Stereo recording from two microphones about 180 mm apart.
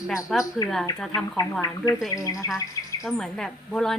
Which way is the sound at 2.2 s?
20° left (ahead or behind).